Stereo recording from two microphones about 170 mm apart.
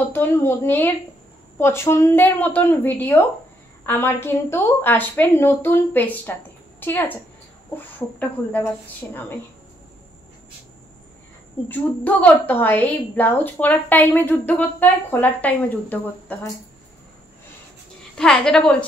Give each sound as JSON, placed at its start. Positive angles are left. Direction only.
{"t": 0.1, "sound": "a woman's voice", "side_deg": 15}
{"t": 11.7, "sound": "a woman's voice", "side_deg": 10}
{"t": 18.1, "sound": "a woman's voice", "side_deg": 5}